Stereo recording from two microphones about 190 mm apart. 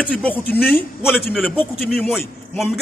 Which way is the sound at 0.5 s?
10° left (ahead or behind).